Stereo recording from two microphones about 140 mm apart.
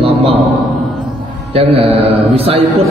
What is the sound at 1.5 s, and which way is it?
A man's voice, 45° right (ahead or behind).